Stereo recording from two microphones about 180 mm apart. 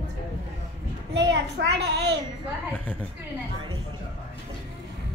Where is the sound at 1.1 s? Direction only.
70° right (ahead or behind).